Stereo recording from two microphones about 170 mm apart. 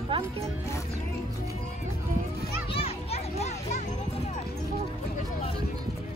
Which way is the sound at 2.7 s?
35° left (ahead or behind).